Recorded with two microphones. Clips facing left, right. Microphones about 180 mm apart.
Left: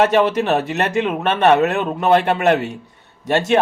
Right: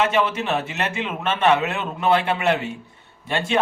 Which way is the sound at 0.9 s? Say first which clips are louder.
Left 8 dB; 40° left (ahead or behind).